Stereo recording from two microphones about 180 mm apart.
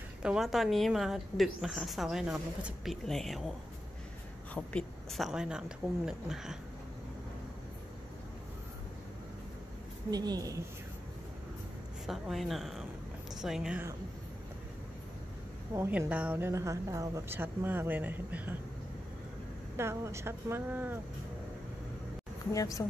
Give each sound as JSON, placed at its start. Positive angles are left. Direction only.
{"t": 0.2, "sound": "a woman's voice", "side_deg": -5}
{"t": 4.6, "sound": "a woman's voice", "side_deg": 5}
{"t": 10.1, "sound": "a woman's voice", "side_deg": -20}
{"t": 12.1, "sound": "a woman's voice", "side_deg": 0}
{"t": 15.7, "sound": "a woman's voice", "side_deg": -15}
{"t": 19.8, "sound": "a woman's voice", "side_deg": -15}
{"t": 22.5, "sound": "speech", "side_deg": 20}